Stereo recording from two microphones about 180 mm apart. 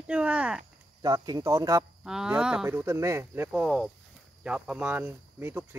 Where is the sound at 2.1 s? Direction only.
5° right (ahead or behind).